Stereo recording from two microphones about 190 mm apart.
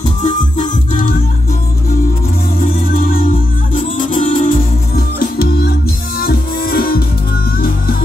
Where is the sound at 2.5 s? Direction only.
50° left (ahead or behind).